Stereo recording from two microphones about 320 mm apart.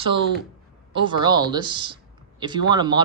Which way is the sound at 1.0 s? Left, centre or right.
Centre.